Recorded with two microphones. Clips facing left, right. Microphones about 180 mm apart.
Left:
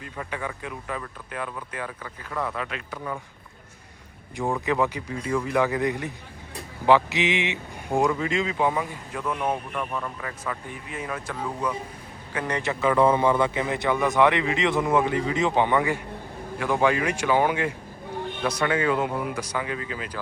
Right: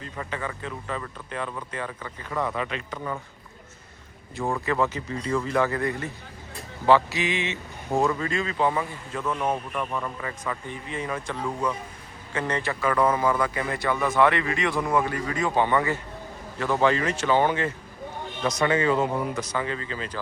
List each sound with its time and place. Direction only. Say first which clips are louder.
0.0 s speech: even; 10° left (ahead or behind)
4.6 s speech: left 1 dB; 15° left (ahead or behind)
9.7 s speech: right 1 dB; centre (ahead or behind)